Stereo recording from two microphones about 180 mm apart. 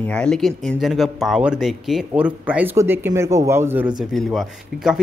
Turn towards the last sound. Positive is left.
turn(degrees=0)  # may be behind; listen again after turning